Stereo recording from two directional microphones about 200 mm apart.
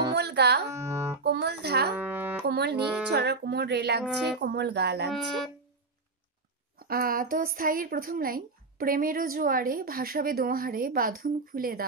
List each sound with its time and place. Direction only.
0.1 s music: 55° right (ahead or behind)
0.7 s music: 15° right (ahead or behind)
1.2 s speech: 55° right (ahead or behind)
2.0 s music: 10° right (ahead or behind)
2.4 s speech: 55° right (ahead or behind)
4.0 s speech: centre (ahead or behind)
4.4 s speech: 55° right (ahead or behind)
6.8 s a woman's voice: 45° right (ahead or behind)